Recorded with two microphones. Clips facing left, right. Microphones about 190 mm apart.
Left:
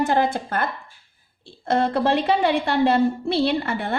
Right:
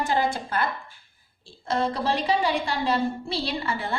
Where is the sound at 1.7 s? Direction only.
60° left (ahead or behind).